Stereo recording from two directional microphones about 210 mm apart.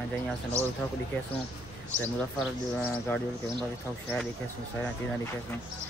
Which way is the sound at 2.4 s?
5° left (ahead or behind).